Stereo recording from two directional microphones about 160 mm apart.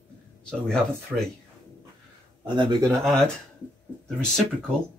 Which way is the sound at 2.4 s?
25° right (ahead or behind).